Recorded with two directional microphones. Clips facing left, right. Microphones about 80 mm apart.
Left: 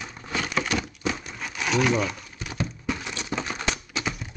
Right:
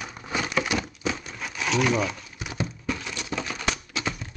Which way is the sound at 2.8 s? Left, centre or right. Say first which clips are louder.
Left 1 dB; centre.